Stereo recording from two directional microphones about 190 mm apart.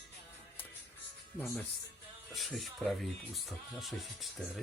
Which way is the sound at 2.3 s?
Centre (ahead or behind).